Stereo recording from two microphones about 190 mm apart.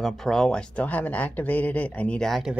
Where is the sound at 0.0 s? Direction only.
Centre (ahead or behind).